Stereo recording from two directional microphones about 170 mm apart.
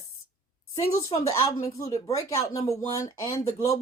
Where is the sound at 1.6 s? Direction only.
35° left (ahead or behind).